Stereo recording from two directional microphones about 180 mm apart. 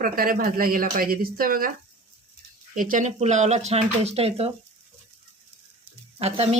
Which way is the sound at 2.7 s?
45° right (ahead or behind).